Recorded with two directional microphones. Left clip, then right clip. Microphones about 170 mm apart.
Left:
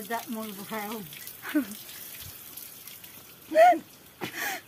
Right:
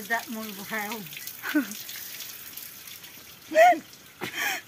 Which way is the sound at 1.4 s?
15° right (ahead or behind).